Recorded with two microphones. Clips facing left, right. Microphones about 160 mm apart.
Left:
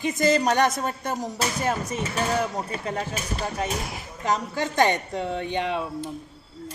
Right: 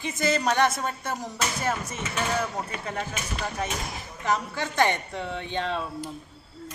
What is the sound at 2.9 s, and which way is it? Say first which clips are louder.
Speech: left 3 dB; 35° left (ahead or behind).